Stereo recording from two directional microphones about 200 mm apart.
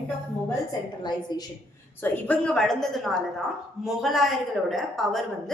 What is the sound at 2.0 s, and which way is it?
A woman's voice, 10° left (ahead or behind).